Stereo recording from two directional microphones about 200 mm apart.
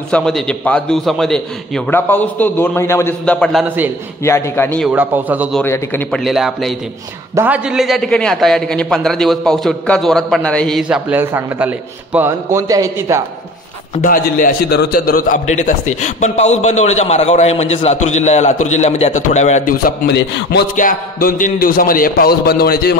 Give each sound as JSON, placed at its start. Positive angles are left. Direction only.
{"t": 0.1, "sound": "a man's voice", "side_deg": 5}
{"t": 3.6, "sound": "a man's voice", "side_deg": -10}
{"t": 4.2, "sound": "a man's voice", "side_deg": 15}
{"t": 4.8, "sound": "a man's voice", "side_deg": -10}
{"t": 5.6, "sound": "a man's voice", "side_deg": 10}
{"t": 14.0, "sound": "a man's voice", "side_deg": 45}
{"t": 20.2, "sound": "speech", "side_deg": 60}
{"t": 20.7, "sound": "a man's voice", "side_deg": 45}